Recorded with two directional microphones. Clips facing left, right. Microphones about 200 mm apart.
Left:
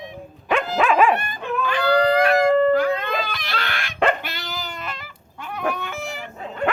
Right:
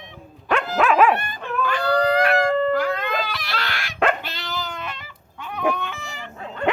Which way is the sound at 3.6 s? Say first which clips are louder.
Left 1 dB; 55° left (ahead or behind).